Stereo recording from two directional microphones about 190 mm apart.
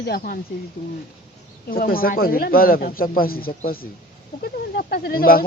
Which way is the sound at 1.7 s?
50° left (ahead or behind).